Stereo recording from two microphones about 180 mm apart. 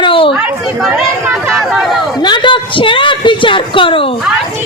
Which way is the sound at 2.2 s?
25° left (ahead or behind).